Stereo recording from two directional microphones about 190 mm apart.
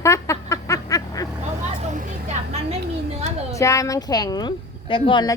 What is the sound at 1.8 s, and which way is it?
Vehicle, 40° right (ahead or behind).